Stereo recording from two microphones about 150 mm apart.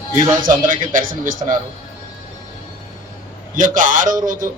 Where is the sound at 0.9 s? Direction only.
65° right (ahead or behind).